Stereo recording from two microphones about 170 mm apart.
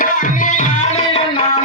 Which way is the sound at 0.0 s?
50° left (ahead or behind).